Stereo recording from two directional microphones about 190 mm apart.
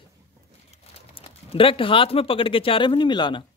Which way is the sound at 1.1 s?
30° left (ahead or behind).